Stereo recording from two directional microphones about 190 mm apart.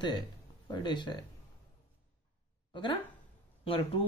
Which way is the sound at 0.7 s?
25° left (ahead or behind).